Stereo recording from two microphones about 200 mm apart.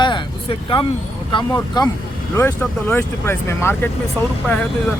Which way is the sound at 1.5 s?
20° left (ahead or behind).